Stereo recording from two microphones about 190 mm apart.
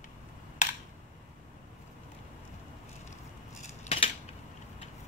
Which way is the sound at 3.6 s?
30° left (ahead or behind).